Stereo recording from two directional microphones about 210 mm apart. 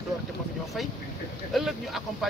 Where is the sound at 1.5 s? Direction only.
Centre (ahead or behind).